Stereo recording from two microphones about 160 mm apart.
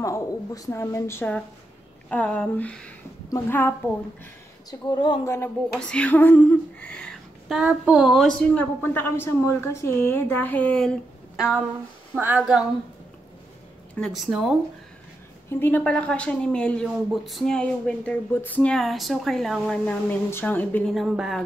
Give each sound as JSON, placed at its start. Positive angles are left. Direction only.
{"t": 0.0, "sound": "a woman's voice", "side_deg": 20}
{"t": 4.6, "sound": "speech", "side_deg": 25}
{"t": 5.3, "sound": "speech", "side_deg": 10}
{"t": 7.5, "sound": "a woman's voice", "side_deg": -10}
{"t": 13.9, "sound": "a woman's voice", "side_deg": 0}
{"t": 15.6, "sound": "a woman's voice", "side_deg": 10}